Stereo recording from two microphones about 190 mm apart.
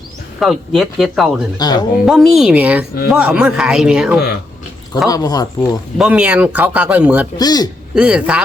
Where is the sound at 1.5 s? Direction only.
20° left (ahead or behind).